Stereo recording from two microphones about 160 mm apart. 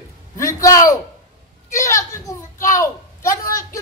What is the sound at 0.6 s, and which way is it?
A woman's voice, 20° left (ahead or behind).